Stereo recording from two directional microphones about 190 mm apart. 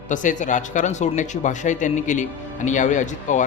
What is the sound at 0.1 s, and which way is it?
Speech, 40° left (ahead or behind).